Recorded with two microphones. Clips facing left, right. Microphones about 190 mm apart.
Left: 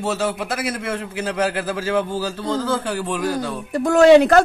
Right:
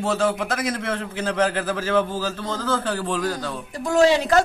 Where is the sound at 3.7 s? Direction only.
60° left (ahead or behind).